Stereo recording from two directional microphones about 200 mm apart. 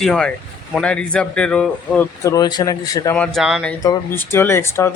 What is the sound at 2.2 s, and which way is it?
Speech, 20° left (ahead or behind).